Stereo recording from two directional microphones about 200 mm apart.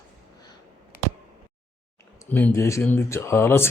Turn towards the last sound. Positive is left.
turn(degrees=10)  # may be behind; listen again after turning